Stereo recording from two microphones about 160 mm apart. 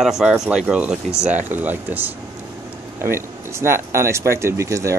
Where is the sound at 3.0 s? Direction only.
15° right (ahead or behind).